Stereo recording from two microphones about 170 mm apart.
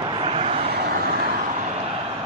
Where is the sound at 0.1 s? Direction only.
35° right (ahead or behind).